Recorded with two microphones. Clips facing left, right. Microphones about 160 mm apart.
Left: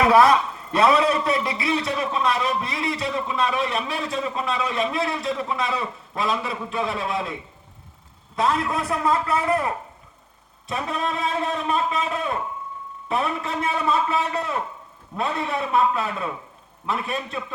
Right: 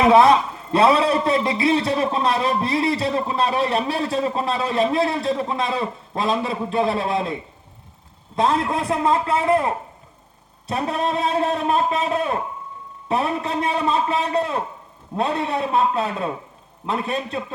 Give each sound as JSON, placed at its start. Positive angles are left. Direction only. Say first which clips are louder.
{"t": 0.0, "sound": "a man's voice", "louder": "right 2 dB", "side_deg": -25}
{"t": 8.4, "sound": "a man's voice", "louder": "right 3 dB", "side_deg": -30}